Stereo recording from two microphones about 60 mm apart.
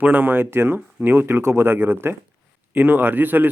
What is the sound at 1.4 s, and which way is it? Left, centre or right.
Speech, right.